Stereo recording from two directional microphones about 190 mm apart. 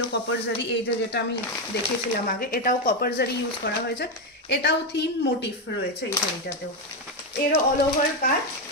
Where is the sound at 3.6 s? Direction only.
60° left (ahead or behind).